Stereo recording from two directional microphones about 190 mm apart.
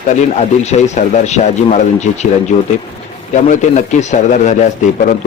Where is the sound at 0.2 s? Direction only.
35° left (ahead or behind).